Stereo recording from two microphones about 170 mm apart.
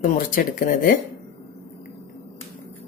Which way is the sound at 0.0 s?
55° left (ahead or behind).